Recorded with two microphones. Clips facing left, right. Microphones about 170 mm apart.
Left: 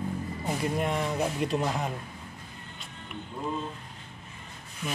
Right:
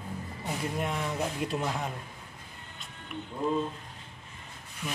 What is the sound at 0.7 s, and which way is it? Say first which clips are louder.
Speech: left 3 dB; centre (ahead or behind).